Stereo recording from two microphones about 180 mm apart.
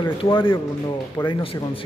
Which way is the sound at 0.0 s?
25° left (ahead or behind).